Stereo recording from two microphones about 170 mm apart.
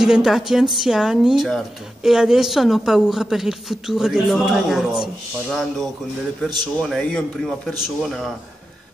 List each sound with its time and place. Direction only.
0.0 s a woman's voice: centre (ahead or behind)